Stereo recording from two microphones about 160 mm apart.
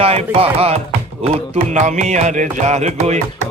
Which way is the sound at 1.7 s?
50° right (ahead or behind).